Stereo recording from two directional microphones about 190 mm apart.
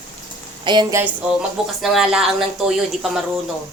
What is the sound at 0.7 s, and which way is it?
Speech, 25° right (ahead or behind).